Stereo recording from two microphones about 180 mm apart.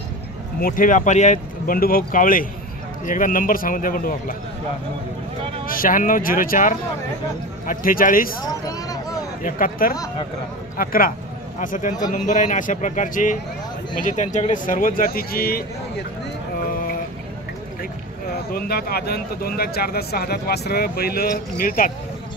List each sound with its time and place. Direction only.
0.6 s speech: 50° left (ahead or behind)
5.7 s speech: 50° left (ahead or behind)
8.6 s vehicle: 20° left (ahead or behind)
9.4 s speech: 50° left (ahead or behind)
18.5 s speech: 55° left (ahead or behind)